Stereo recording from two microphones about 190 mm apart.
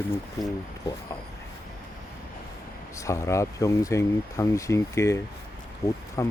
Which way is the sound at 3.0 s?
15° left (ahead or behind).